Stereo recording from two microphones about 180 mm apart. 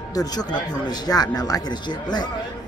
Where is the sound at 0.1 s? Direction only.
20° left (ahead or behind).